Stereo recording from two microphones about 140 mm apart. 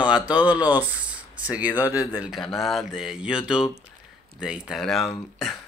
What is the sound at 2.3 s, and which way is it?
Speech, centre (ahead or behind).